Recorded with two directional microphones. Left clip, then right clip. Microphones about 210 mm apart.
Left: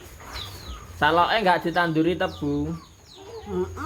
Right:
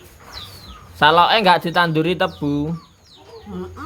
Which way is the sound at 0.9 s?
45° right (ahead or behind).